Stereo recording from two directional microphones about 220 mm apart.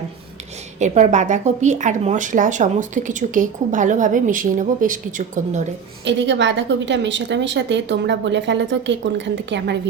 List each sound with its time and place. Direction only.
0.8 s a woman's voice: 30° right (ahead or behind)
6.1 s a woman's voice: 55° right (ahead or behind)